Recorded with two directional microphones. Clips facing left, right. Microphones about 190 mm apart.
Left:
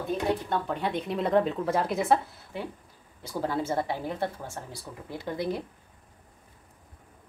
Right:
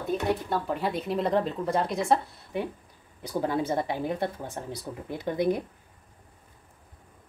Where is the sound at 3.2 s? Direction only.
15° right (ahead or behind).